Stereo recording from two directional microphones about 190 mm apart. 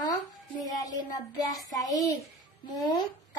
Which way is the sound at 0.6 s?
20° left (ahead or behind).